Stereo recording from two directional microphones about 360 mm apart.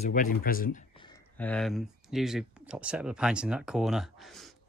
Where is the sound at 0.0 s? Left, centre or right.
Left.